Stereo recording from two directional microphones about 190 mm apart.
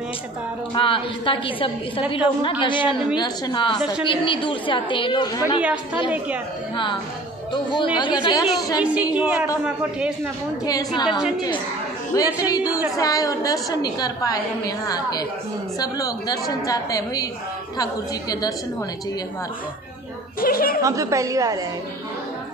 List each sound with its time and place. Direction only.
0.7 s a woman's voice: 25° left (ahead or behind)
6.1 s a woman's voice: 10° right (ahead or behind)
7.5 s a woman's voice: 25° left (ahead or behind)
8.8 s a woman's voice: 5° right (ahead or behind)
10.6 s a woman's voice: 20° left (ahead or behind)
11.1 s a man's voice: centre (ahead or behind)
12.1 s a woman's voice: 20° left (ahead or behind)
20.3 s speech: 50° left (ahead or behind)
20.8 s a woman's voice: 15° right (ahead or behind)